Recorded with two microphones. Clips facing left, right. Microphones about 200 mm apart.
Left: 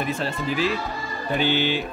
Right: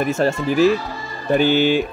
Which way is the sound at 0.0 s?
45° right (ahead or behind).